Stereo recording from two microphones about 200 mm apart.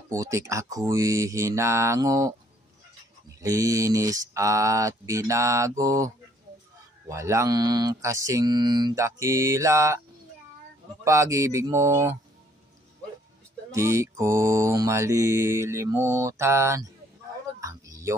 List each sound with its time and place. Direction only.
0.1 s mantra: 15° right (ahead or behind)
3.3 s mantra: 15° right (ahead or behind)
11.1 s mantra: 15° right (ahead or behind)
13.7 s mantra: 15° right (ahead or behind)
17.6 s a sound: 15° right (ahead or behind)